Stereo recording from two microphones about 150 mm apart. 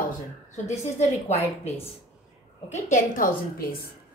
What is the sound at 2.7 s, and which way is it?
A woman's voice, 60° left (ahead or behind).